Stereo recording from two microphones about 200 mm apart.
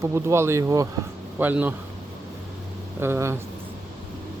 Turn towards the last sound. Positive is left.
turn(degrees=-15)  # may be behind; listen again after turning